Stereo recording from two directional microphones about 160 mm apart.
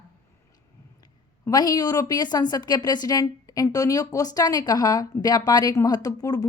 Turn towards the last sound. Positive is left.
turn(degrees=20)  # may be behind; listen again after turning